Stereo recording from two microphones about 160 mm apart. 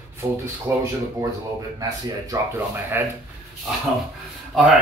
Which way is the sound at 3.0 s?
15° right (ahead or behind).